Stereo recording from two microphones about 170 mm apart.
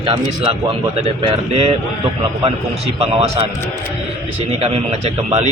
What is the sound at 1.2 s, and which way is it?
Speech, 35° right (ahead or behind).